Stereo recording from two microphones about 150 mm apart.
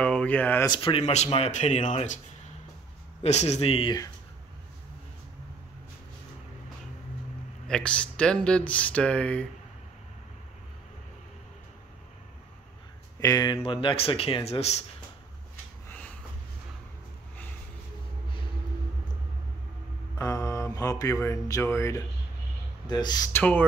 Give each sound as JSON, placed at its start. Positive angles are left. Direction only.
{"t": 0.0, "sound": "speech", "side_deg": 5}
{"t": 0.7, "sound": "speech", "side_deg": 35}
{"t": 3.2, "sound": "speech", "side_deg": 45}
{"t": 7.6, "sound": "speech", "side_deg": 5}
{"t": 13.2, "sound": "speech", "side_deg": 25}
{"t": 13.6, "sound": "speech", "side_deg": 35}
{"t": 15.9, "sound": "snort", "side_deg": 10}
{"t": 20.2, "sound": "speech", "side_deg": 20}